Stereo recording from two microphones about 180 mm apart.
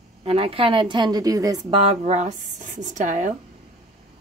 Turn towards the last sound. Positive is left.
turn(degrees=-45)  # may be behind; listen again after turning